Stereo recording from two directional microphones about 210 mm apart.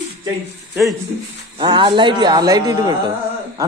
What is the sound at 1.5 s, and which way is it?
A man's voice, 20° right (ahead or behind).